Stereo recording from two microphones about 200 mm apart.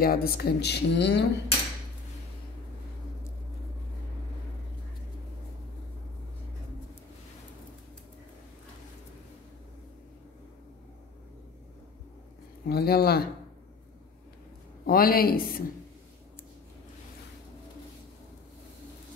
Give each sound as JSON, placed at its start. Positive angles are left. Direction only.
{"t": 0.0, "sound": "speech", "side_deg": 50}
{"t": 12.6, "sound": "speech", "side_deg": 50}
{"t": 14.9, "sound": "speech", "side_deg": 45}